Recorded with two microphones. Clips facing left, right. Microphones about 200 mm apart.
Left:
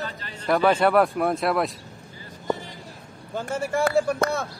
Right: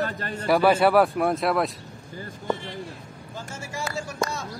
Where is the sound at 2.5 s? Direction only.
40° left (ahead or behind).